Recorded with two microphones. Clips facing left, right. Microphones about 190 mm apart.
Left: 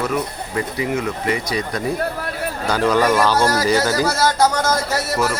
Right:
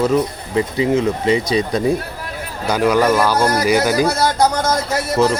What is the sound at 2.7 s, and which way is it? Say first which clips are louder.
Speech: right 2 dB; 10° right (ahead or behind).